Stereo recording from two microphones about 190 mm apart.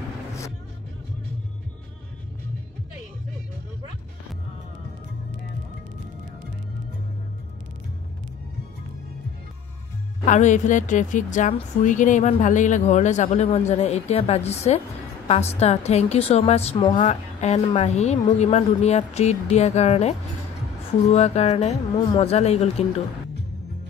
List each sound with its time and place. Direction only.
10.2 s a woman's voice: 40° left (ahead or behind)